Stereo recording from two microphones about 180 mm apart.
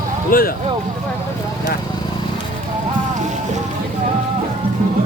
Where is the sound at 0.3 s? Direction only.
55° left (ahead or behind).